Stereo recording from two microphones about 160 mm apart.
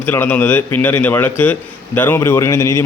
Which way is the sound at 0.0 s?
10° left (ahead or behind).